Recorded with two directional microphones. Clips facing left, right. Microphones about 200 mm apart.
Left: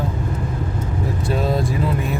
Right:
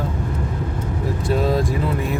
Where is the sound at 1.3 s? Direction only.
Centre (ahead or behind).